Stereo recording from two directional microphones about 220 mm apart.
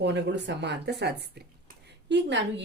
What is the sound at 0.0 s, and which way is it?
Speech, 50° right (ahead or behind).